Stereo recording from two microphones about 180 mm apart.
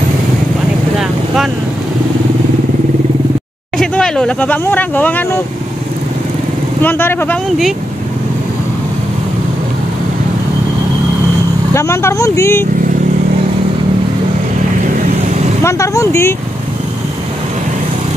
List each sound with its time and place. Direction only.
0.9 s vehicle: centre (ahead or behind)
3.7 s speech: 5° left (ahead or behind)
6.8 s speech: 10° left (ahead or behind)
11.7 s speech: 15° left (ahead or behind)
15.6 s speech: 15° left (ahead or behind)